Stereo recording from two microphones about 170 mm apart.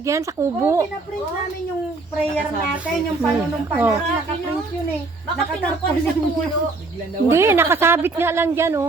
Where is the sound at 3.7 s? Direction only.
10° right (ahead or behind).